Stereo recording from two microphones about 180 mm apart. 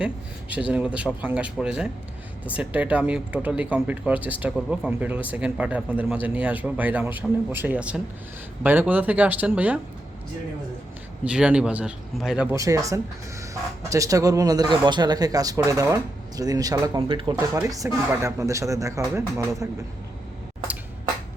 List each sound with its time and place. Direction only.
0.5 s speech: 5° right (ahead or behind)
11.3 s speech: 5° right (ahead or behind)
12.5 s speech: 15° right (ahead or behind)
17.3 s speech: 15° right (ahead or behind)